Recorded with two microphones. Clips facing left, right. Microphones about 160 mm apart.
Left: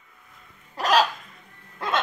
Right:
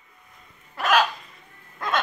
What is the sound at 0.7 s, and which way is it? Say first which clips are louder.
Hiccup: left 1 dB; 35° left (ahead or behind).